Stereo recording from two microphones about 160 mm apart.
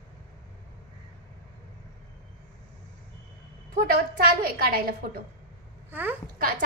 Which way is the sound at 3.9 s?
65° right (ahead or behind).